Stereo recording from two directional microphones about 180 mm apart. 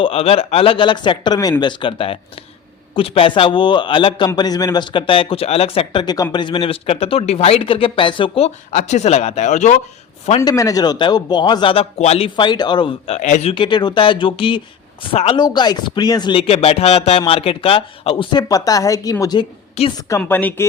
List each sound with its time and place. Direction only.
0.0 s speech: 35° left (ahead or behind)
10.4 s speech: 20° left (ahead or behind)
13.1 s speech: 40° left (ahead or behind)
20.0 s a woman's voice: 15° left (ahead or behind)